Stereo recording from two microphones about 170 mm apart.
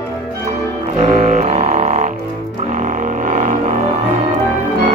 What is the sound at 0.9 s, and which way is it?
Music, 40° right (ahead or behind).